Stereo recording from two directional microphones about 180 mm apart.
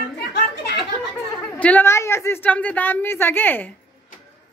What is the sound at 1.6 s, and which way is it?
Speech, 10° left (ahead or behind).